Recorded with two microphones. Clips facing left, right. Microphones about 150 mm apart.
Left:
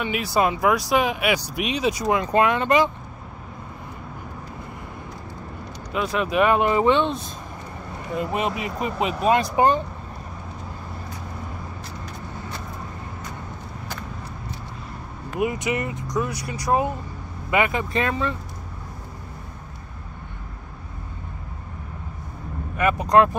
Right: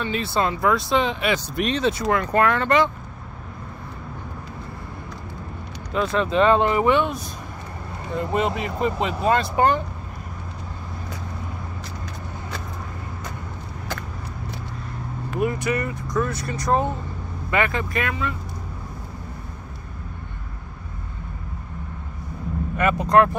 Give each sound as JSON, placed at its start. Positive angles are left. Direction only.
{"t": 0.0, "sound": "speech", "side_deg": 15}
{"t": 5.9, "sound": "speech", "side_deg": 10}
{"t": 8.5, "sound": "speech", "side_deg": 15}
{"t": 15.3, "sound": "speech", "side_deg": 15}
{"t": 17.9, "sound": "speech", "side_deg": 30}
{"t": 22.8, "sound": "speech", "side_deg": 10}